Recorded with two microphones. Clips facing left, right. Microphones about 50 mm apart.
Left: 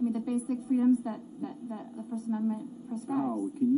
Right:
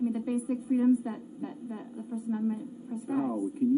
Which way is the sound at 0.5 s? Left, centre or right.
Centre.